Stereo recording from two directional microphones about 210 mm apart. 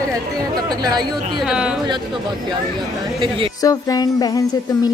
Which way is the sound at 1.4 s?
5° right (ahead or behind).